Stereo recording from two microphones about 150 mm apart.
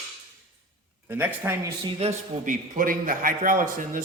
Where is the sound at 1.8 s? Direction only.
45° right (ahead or behind).